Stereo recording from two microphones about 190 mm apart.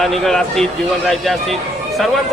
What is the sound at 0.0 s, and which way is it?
Speech, centre (ahead or behind).